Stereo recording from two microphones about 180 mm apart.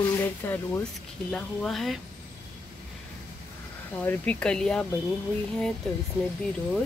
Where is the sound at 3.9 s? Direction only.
10° left (ahead or behind).